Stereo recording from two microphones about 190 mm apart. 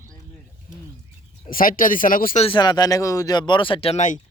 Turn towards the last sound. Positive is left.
turn(degrees=40)  # may be behind; listen again after turning